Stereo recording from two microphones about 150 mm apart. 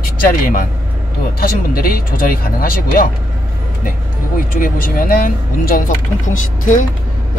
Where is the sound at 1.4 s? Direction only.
75° left (ahead or behind).